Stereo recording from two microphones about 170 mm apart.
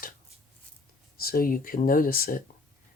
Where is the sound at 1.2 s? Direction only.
60° left (ahead or behind).